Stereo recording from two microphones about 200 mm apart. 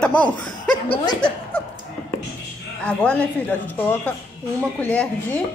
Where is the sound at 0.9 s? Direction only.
20° left (ahead or behind).